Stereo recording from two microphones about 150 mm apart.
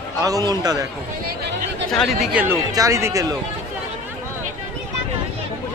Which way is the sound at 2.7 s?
20° right (ahead or behind).